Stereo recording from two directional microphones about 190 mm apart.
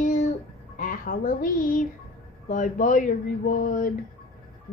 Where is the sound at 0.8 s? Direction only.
45° left (ahead or behind).